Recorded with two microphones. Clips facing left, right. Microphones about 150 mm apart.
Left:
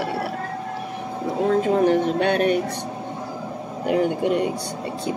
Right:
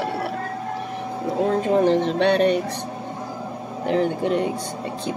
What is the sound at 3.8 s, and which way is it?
Speech, 10° left (ahead or behind).